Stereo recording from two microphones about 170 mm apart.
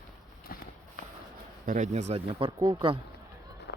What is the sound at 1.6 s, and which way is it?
Speech, 50° right (ahead or behind).